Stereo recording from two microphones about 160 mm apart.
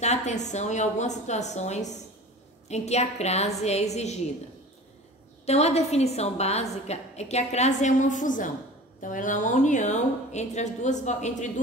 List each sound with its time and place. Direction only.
0.0 s a woman's voice: 45° left (ahead or behind)
5.4 s a woman's voice: 40° left (ahead or behind)